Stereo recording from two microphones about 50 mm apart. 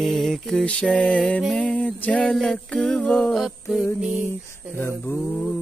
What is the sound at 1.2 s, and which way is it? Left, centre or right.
Mantra, left.